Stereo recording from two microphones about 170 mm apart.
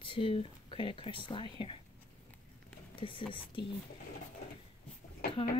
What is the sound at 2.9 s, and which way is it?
Speech, 30° left (ahead or behind).